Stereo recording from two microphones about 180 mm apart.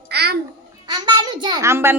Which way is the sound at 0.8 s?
25° right (ahead or behind).